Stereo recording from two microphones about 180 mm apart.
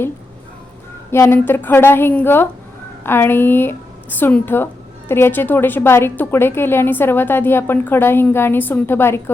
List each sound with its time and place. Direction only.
1.1 s a woman's voice: 15° left (ahead or behind)